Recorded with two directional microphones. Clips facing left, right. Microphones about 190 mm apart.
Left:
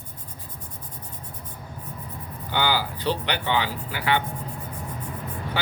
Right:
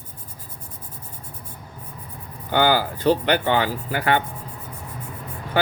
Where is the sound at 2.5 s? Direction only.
50° right (ahead or behind).